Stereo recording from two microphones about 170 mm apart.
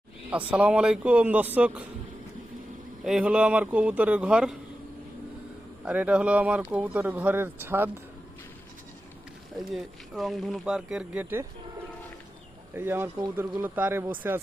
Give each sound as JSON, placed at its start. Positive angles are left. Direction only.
{"t": 0.3, "sound": "speech", "side_deg": -5}
{"t": 3.0, "sound": "speech", "side_deg": -5}
{"t": 5.8, "sound": "speech", "side_deg": -5}
{"t": 9.6, "sound": "speech", "side_deg": 0}
{"t": 12.7, "sound": "speech", "side_deg": -15}